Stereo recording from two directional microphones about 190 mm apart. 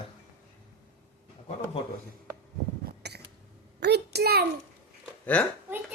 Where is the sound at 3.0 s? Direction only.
60° right (ahead or behind).